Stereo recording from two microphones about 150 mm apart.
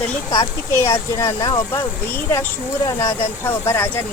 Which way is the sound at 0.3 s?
20° left (ahead or behind).